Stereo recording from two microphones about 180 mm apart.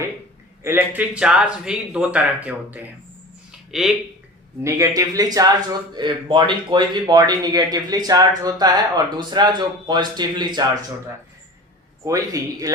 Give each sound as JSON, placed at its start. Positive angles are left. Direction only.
{"t": 0.6, "sound": "a man's voice", "side_deg": -10}
{"t": 4.6, "sound": "speech", "side_deg": -15}
{"t": 12.0, "sound": "speech", "side_deg": -20}